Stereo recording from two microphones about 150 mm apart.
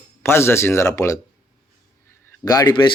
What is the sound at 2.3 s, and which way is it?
Speech, 25° left (ahead or behind).